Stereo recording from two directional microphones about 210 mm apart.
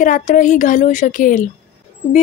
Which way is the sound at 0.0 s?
35° left (ahead or behind).